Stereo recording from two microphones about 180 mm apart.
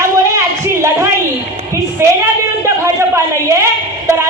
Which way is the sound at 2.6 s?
15° right (ahead or behind).